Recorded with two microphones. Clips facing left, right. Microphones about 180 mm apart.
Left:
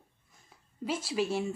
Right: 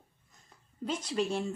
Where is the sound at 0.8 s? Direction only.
5° left (ahead or behind).